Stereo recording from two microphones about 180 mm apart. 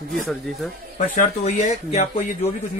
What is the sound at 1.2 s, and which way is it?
Speech, 45° left (ahead or behind).